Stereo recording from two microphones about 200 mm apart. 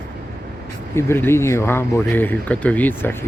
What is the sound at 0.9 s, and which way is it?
Speech, 10° left (ahead or behind).